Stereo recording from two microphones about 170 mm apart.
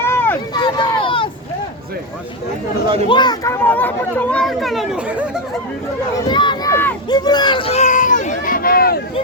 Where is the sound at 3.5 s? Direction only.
10° left (ahead or behind); by 5.4 s 5° right (ahead or behind).